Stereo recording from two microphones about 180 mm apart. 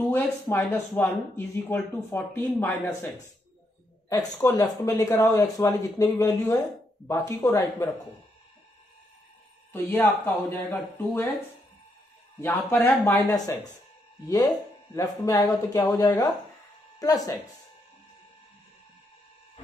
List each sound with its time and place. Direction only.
0.0 s speech: 10° left (ahead or behind)
4.1 s speech: 20° left (ahead or behind)
9.7 s speech: 10° left (ahead or behind)
12.4 s speech: 10° left (ahead or behind)
15.0 s speech: 20° left (ahead or behind)